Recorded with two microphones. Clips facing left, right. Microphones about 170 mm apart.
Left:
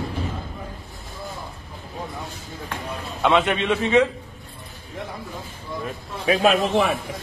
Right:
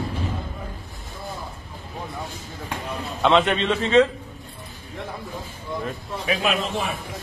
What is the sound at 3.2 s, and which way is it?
Speech, 10° left (ahead or behind).